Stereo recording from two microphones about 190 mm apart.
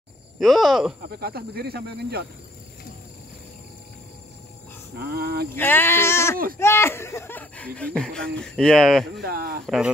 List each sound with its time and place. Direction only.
0.4 s speech: centre (ahead or behind)
1.2 s speech: 55° right (ahead or behind)
4.9 s speech: 55° right (ahead or behind)
5.5 s speech: 10° left (ahead or behind)
9.2 s speech: 55° right (ahead or behind)
9.7 s speech: 5° right (ahead or behind)